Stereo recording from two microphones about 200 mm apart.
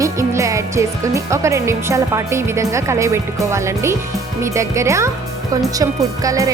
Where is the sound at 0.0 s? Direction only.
15° right (ahead or behind).